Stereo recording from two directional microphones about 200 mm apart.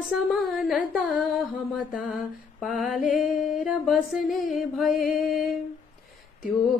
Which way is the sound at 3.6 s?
Centre (ahead or behind).